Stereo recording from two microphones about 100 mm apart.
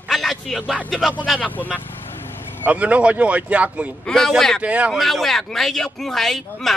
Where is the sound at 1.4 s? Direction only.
15° left (ahead or behind).